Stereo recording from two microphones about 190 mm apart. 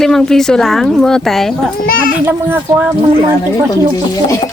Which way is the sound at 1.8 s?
50° left (ahead or behind).